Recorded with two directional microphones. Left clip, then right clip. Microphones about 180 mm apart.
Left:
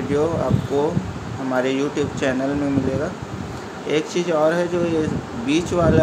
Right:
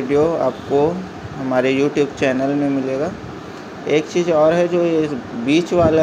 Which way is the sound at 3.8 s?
10° right (ahead or behind).